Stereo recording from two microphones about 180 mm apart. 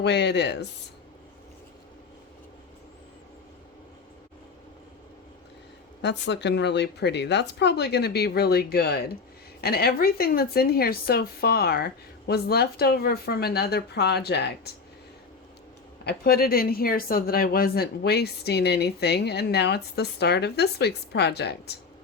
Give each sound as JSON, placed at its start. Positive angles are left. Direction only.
{"t": 0.0, "sound": "speech", "side_deg": 70}
{"t": 6.0, "sound": "speech", "side_deg": 75}
{"t": 16.0, "sound": "speech", "side_deg": 55}